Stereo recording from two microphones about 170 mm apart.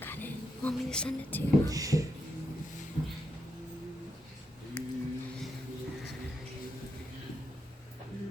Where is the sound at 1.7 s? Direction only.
20° right (ahead or behind).